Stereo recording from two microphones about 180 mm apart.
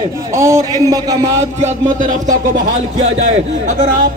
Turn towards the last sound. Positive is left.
turn(degrees=-45)  # may be behind; listen again after turning